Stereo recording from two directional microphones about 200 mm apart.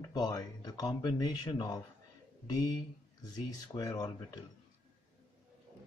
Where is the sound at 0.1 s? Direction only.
20° left (ahead or behind).